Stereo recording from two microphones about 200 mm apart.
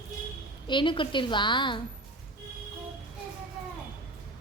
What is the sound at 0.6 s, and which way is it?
Speech, 25° left (ahead or behind).